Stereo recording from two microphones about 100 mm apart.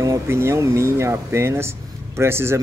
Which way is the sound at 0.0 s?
30° right (ahead or behind).